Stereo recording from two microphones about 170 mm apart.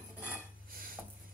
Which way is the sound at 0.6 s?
55° right (ahead or behind).